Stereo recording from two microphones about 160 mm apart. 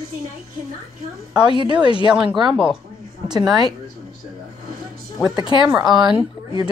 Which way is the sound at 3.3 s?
25° right (ahead or behind).